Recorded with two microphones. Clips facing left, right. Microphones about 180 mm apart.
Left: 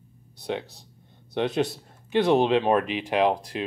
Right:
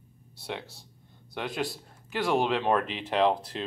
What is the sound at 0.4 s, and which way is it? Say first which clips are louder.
Speech: left 7 dB; 20° left (ahead or behind).